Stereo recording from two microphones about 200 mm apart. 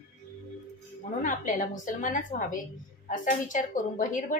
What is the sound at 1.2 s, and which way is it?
A woman's voice, 40° left (ahead or behind).